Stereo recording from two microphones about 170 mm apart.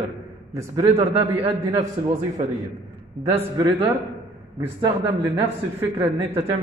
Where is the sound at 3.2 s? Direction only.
35° right (ahead or behind).